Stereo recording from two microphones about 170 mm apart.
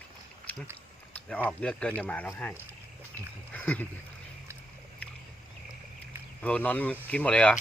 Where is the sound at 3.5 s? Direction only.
10° left (ahead or behind).